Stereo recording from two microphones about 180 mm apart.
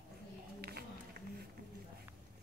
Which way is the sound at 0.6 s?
60° right (ahead or behind).